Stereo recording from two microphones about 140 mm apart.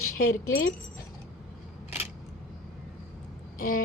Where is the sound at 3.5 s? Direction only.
85° left.